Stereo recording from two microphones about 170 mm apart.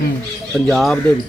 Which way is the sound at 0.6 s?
Centre (ahead or behind).